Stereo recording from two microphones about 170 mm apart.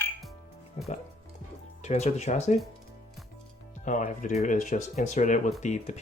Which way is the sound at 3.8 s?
50° left (ahead or behind).